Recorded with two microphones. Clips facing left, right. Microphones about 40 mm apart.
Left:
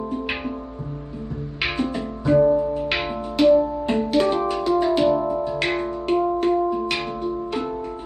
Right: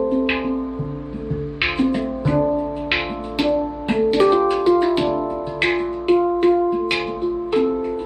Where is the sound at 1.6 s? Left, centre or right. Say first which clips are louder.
Right 5 dB; right.